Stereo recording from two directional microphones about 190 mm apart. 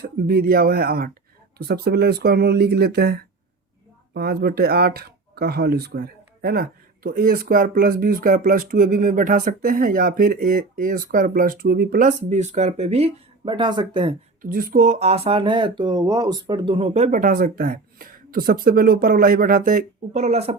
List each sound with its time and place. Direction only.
0.0 s speech: 55° right (ahead or behind); by 14.2 s 25° right (ahead or behind)
14.5 s speech: 50° right (ahead or behind); by 20.6 s 35° right (ahead or behind)